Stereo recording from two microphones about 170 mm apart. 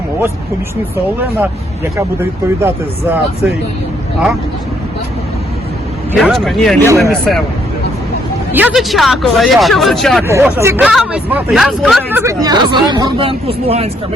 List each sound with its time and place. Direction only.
1.4 s speech: 15° right (ahead or behind)
6.1 s speech: centre (ahead or behind)
8.5 s speech: 5° right (ahead or behind)
10.2 s speech: 15° right (ahead or behind)
10.8 s speech: 5° right (ahead or behind)
12.1 s speech: 15° right (ahead or behind); by 13.9 s 35° right (ahead or behind)